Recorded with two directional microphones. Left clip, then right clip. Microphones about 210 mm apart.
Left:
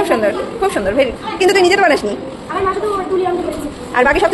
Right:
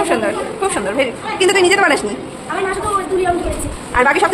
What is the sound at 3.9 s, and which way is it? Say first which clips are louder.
Speech: left 1 dB; 10° left (ahead or behind).